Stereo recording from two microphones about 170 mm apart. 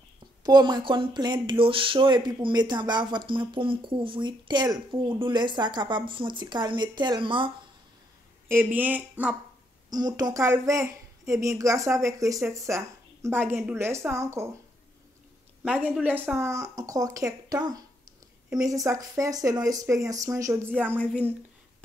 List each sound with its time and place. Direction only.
0.4 s speech: 25° right (ahead or behind)
8.5 s speech: 10° right (ahead or behind)
9.8 s speech: 25° right (ahead or behind)
15.6 s speech: 5° right (ahead or behind)
18.6 s speech: 20° right (ahead or behind)